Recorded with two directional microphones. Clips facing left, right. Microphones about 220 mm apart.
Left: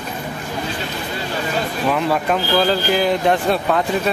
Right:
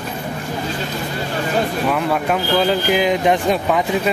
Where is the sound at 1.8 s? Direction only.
Centre (ahead or behind).